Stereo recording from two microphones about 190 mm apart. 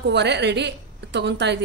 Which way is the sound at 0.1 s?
65° right (ahead or behind).